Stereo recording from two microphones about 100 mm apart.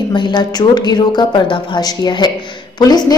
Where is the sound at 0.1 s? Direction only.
50° left (ahead or behind).